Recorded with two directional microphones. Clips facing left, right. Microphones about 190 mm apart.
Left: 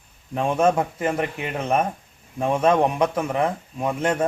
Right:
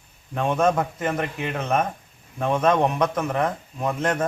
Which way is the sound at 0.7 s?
10° left (ahead or behind).